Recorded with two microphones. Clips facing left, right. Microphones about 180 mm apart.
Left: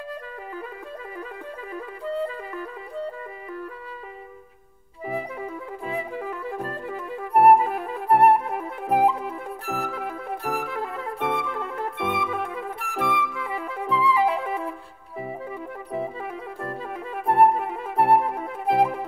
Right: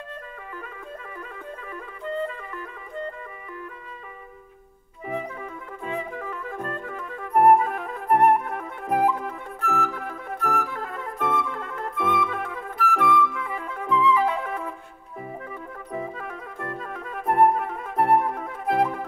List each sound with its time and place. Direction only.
5.4 s music: 35° left (ahead or behind)
12.5 s flute: 30° left (ahead or behind)
15.9 s music: 10° left (ahead or behind)
16.5 s music: 30° left (ahead or behind)